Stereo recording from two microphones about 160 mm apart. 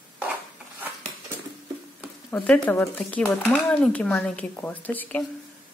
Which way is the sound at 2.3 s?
5° left (ahead or behind).